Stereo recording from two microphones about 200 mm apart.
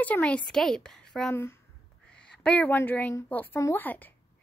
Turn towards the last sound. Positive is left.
turn(degrees=10)  # may be behind; listen again after turning